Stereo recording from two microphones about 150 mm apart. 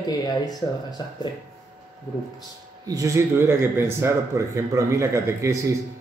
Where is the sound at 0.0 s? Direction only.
25° left (ahead or behind).